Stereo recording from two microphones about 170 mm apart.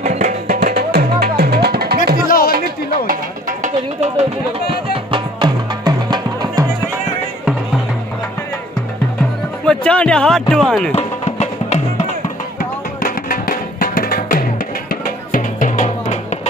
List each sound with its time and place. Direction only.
0.0 s music: 50° right (ahead or behind); by 2.0 s 70° right (ahead or behind)
2.2 s a sound: 55° left (ahead or behind)
2.5 s music: 60° right (ahead or behind); by 4.7 s 40° right (ahead or behind)
4.9 s music: 30° right (ahead or behind)
9.7 s music: 5° left (ahead or behind)
10.5 s speech: 5° left (ahead or behind)
10.9 s music: 40° left (ahead or behind)
12.5 s music: 55° left (ahead or behind)